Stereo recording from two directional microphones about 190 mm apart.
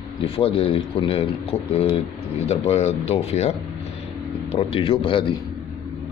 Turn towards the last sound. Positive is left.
turn(degrees=25)  # may be behind; listen again after turning